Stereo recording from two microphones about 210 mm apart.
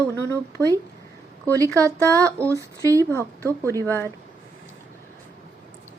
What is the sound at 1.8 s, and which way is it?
Speech, 15° right (ahead or behind).